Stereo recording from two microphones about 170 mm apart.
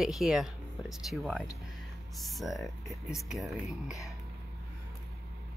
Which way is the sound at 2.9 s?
20° left (ahead or behind).